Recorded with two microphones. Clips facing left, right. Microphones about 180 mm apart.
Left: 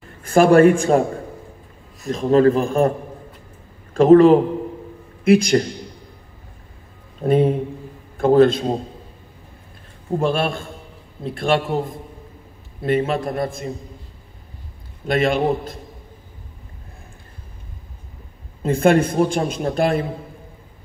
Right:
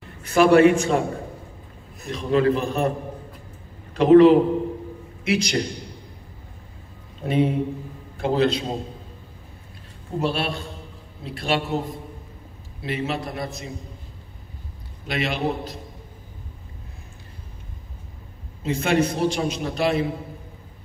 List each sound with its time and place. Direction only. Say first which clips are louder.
0.2 s a man's voice: left 3 dB; 50° left (ahead or behind)
2.0 s a man's voice: left 5 dB; 45° left (ahead or behind)
3.9 s a man's voice: left 2 dB; 45° left (ahead or behind)
7.2 s a man's voice: left 4 dB; 50° left (ahead or behind)
10.1 s a man's voice: left 5 dB; 50° left (ahead or behind)
15.0 s a man's voice: left 7 dB; 50° left (ahead or behind)
18.6 s a man's voice: left 6 dB; 50° left (ahead or behind)